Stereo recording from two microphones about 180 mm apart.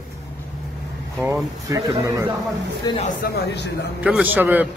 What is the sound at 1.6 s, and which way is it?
Speech, 20° right (ahead or behind).